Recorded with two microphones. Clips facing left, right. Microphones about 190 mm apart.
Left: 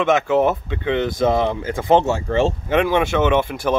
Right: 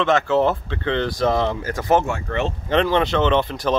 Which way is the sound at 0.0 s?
20° left (ahead or behind).